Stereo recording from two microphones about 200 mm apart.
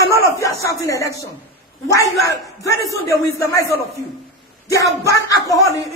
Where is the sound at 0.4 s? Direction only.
15° left (ahead or behind).